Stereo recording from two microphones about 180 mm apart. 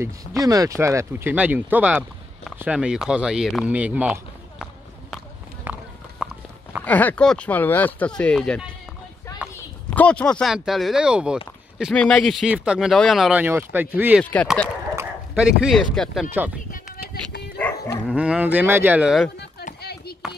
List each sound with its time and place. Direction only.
0.0 s speech: 20° right (ahead or behind)
5.6 s clip-clop: 10° right (ahead or behind)
6.8 s speech: 10° left (ahead or behind)
9.8 s speech: 5° left (ahead or behind)
11.9 s speech: 5° left (ahead or behind)
14.2 s speech: 5° left (ahead or behind)
15.0 s speech: 5° right (ahead or behind)
16.3 s speech: 10° right (ahead or behind)
16.7 s a sound: 55° left (ahead or behind)
17.6 s moo: 10° left (ahead or behind)
18.0 s speech: 5° right (ahead or behind)
19.8 s a sound: 60° left (ahead or behind)